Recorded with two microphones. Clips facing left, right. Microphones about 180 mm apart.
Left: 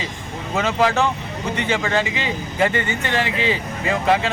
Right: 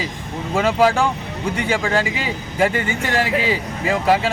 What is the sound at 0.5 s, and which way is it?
Speech, 10° right (ahead or behind).